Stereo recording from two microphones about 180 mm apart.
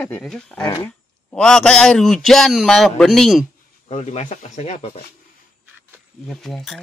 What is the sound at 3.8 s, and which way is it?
Speech, 40° left (ahead or behind).